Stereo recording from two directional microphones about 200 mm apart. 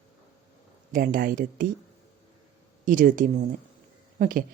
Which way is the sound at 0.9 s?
45° right (ahead or behind).